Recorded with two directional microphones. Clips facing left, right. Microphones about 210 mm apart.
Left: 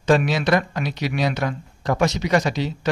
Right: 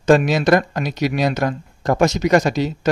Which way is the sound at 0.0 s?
45° right (ahead or behind).